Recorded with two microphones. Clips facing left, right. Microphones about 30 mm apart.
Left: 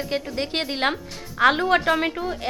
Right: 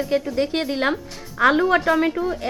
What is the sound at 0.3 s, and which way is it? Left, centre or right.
A woman's voice, left.